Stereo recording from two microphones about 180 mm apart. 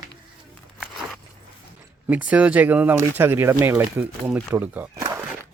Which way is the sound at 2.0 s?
5° right (ahead or behind).